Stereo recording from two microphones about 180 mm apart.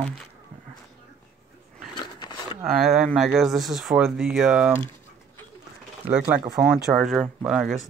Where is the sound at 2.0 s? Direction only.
25° left (ahead or behind).